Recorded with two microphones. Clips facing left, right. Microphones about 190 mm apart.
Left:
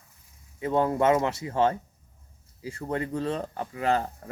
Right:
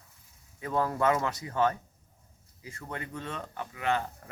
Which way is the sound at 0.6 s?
25° left (ahead or behind).